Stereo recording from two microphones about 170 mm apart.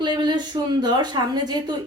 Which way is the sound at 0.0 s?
25° right (ahead or behind).